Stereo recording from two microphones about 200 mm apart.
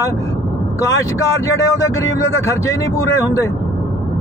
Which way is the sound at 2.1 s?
15° left (ahead or behind).